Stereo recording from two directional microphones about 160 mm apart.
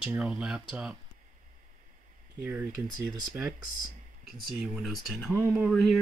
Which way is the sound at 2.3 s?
10° right (ahead or behind).